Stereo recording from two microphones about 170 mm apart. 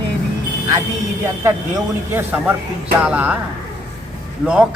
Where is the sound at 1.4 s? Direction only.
15° right (ahead or behind).